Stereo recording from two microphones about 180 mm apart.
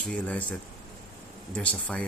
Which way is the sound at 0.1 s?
5° left (ahead or behind).